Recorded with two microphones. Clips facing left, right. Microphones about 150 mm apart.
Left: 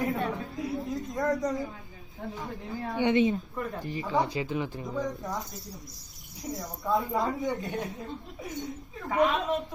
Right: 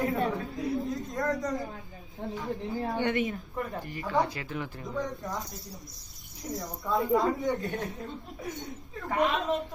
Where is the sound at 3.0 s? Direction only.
20° left (ahead or behind).